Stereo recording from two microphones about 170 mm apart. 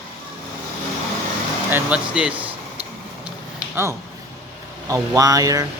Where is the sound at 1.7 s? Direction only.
5° right (ahead or behind).